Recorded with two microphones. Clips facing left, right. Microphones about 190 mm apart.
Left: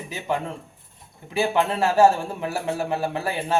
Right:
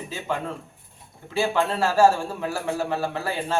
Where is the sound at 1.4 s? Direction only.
15° left (ahead or behind).